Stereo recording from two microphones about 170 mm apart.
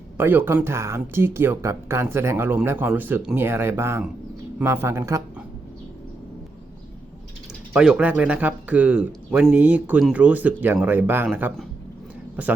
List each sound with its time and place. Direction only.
0.2 s speech: 10° right (ahead or behind)
7.7 s speech: 5° right (ahead or behind)
12.4 s speech: 10° right (ahead or behind)